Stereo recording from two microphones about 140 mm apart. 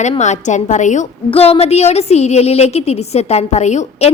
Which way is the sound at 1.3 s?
45° left (ahead or behind).